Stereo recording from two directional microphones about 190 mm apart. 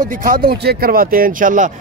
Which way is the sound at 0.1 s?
45° right (ahead or behind).